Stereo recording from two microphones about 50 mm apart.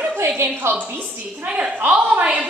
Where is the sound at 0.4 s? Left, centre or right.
Right.